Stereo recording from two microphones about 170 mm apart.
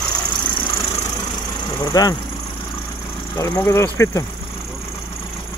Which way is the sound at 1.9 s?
20° left (ahead or behind).